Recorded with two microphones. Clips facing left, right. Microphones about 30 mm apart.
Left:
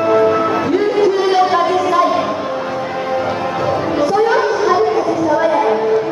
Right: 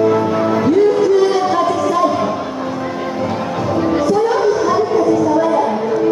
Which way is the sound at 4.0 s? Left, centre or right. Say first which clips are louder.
Left 3 dB; left.